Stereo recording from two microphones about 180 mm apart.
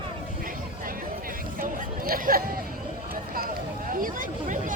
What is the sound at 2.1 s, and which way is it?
Chatter, 55° right (ahead or behind).